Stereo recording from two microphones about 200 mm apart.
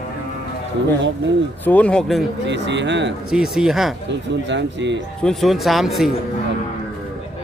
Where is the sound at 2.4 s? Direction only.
60° right (ahead or behind).